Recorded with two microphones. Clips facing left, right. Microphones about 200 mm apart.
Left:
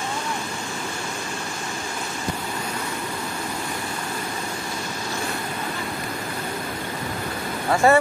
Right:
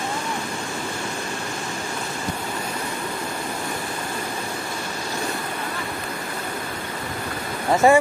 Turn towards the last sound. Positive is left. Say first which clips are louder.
# right 2 dB
turn(degrees=-15)  # may be behind; listen again after turning